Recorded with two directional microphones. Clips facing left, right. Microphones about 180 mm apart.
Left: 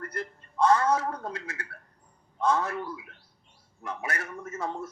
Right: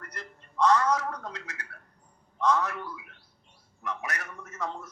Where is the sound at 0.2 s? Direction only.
30° left (ahead or behind).